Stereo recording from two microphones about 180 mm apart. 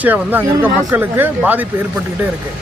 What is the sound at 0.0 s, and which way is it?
Speech, 10° right (ahead or behind).